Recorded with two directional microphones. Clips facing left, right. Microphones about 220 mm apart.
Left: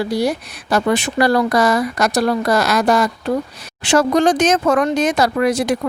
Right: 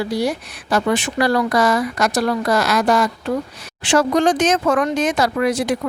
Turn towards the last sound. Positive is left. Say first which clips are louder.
# left 2 dB
turn(degrees=40)  # may be behind; listen again after turning